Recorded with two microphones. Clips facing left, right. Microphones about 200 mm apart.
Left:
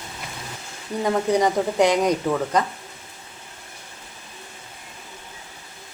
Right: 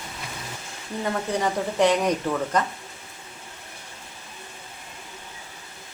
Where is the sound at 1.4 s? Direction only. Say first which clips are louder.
Left 3 dB; 15° left (ahead or behind).